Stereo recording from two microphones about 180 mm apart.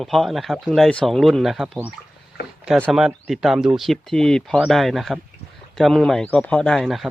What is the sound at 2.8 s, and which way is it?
Speech, centre (ahead or behind).